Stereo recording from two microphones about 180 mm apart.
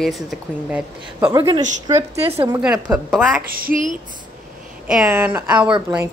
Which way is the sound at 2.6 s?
5° right (ahead or behind).